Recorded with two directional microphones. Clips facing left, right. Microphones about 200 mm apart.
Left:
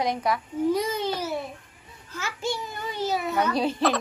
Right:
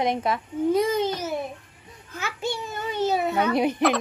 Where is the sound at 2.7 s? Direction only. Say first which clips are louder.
Right 4 dB; 25° right (ahead or behind).